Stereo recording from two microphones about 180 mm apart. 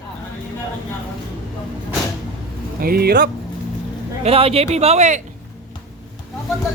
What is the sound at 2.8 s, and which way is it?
Speech, 60° right (ahead or behind).